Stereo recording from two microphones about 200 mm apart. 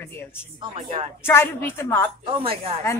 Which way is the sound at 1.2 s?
10° left (ahead or behind).